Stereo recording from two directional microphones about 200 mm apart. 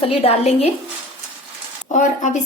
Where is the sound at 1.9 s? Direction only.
40° left (ahead or behind).